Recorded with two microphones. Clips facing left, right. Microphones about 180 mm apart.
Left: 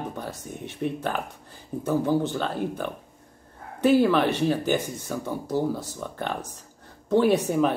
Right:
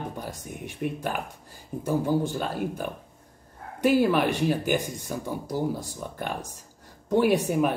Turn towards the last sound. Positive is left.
turn(degrees=-15)  # may be behind; listen again after turning